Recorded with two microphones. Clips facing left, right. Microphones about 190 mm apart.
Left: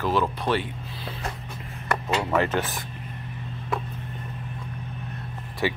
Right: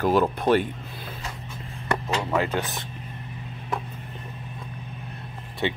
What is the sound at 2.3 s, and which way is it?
Speech, 15° right (ahead or behind).